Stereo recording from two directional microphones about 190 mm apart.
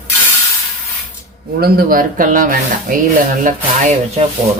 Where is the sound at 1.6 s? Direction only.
50° right (ahead or behind).